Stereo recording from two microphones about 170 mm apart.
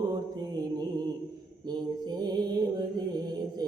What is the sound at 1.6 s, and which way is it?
Music, 25° right (ahead or behind).